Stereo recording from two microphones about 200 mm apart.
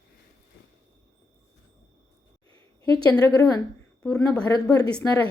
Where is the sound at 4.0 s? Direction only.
5° left (ahead or behind).